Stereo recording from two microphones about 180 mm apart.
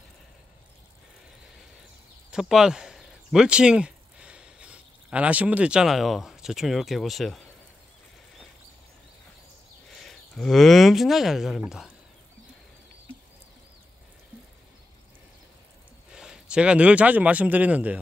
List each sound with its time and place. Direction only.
2.3 s speech: 5° right (ahead or behind)
9.8 s speech: centre (ahead or behind)
16.1 s speech: 5° right (ahead or behind)